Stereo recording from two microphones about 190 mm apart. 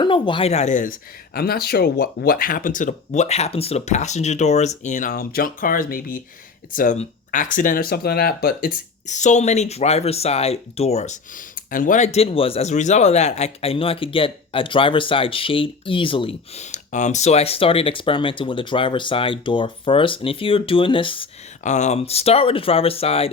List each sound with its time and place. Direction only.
0.0 s speech: 25° left (ahead or behind)
16.7 s speech: 40° left (ahead or behind)
21.6 s speech: 40° left (ahead or behind)